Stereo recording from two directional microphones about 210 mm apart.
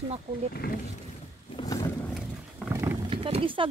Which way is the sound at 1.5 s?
20° left (ahead or behind).